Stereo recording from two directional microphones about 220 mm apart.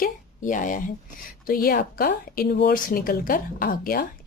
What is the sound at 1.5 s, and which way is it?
Speech, 40° left (ahead or behind).